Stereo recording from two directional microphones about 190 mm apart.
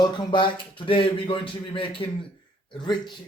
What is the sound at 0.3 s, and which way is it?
Speech, 25° left (ahead or behind).